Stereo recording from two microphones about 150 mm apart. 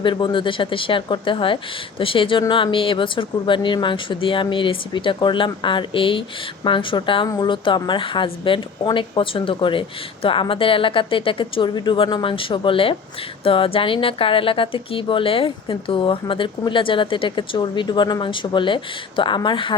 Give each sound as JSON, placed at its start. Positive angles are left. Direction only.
{"t": 0.0, "sound": "a woman's voice", "side_deg": 30}